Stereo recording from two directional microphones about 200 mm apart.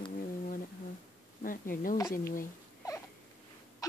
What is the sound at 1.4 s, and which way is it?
Speech, 45° left (ahead or behind).